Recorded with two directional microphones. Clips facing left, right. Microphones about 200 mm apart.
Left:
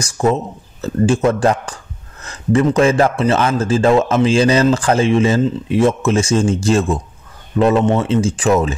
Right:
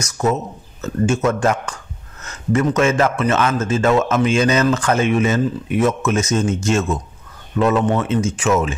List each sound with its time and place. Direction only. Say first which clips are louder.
0.0 s speech: left 3 dB; 30° left (ahead or behind)